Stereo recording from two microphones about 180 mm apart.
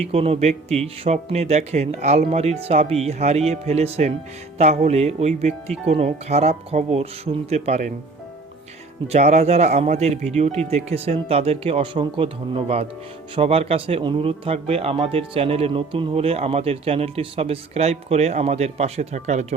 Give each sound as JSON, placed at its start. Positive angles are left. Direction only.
{"t": 0.0, "sound": "speech", "side_deg": -35}
{"t": 9.1, "sound": "speech", "side_deg": -40}